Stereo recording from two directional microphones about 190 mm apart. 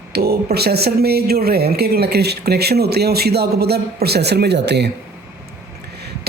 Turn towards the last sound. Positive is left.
turn(degrees=-65)  # may be behind; listen again after turning